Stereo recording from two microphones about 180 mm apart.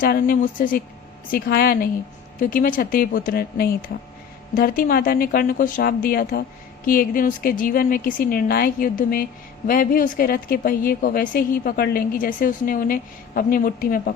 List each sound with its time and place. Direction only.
0.0 s a woman's voice: 55° left (ahead or behind)